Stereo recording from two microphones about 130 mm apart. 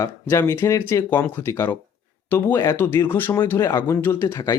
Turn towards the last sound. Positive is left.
turn(degrees=15)  # may be behind; listen again after turning